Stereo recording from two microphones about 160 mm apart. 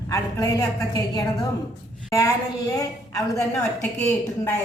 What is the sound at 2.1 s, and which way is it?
A woman's voice, 20° left (ahead or behind).